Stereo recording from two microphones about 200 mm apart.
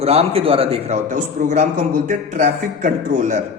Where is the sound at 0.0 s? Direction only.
30° right (ahead or behind).